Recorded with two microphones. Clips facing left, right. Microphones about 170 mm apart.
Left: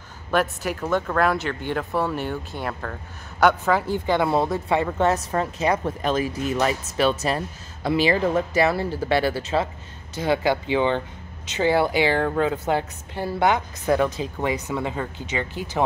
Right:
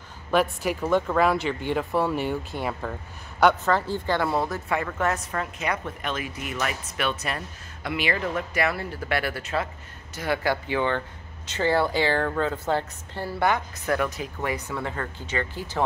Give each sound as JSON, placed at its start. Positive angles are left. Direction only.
{"t": 0.3, "sound": "speech", "side_deg": 0}
{"t": 3.4, "sound": "a woman's voice", "side_deg": 10}